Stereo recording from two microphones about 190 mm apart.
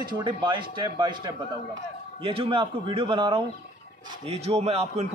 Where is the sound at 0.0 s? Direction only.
25° right (ahead or behind).